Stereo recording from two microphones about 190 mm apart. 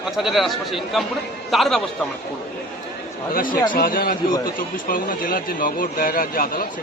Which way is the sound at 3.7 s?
45° left (ahead or behind).